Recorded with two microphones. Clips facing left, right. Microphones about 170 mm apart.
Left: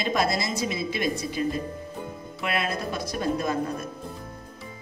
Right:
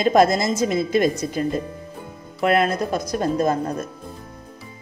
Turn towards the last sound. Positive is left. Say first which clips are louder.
# right 6 dB
turn(degrees=-40)  # may be behind; listen again after turning